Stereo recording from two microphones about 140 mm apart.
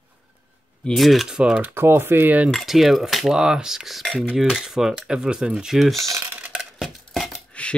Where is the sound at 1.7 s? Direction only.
15° right (ahead or behind).